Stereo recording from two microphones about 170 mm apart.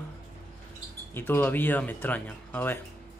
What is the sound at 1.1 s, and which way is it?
Speech, 10° left (ahead or behind).